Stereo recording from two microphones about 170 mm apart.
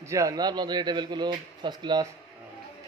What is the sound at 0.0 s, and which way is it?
A man's voice, 20° right (ahead or behind).